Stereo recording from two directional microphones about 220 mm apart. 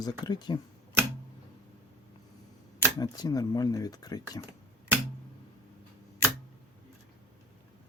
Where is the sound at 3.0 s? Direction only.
15° left (ahead or behind).